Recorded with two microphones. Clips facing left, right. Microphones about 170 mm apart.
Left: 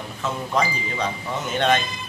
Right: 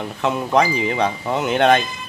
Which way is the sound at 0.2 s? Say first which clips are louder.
Right 6 dB; 65° right (ahead or behind).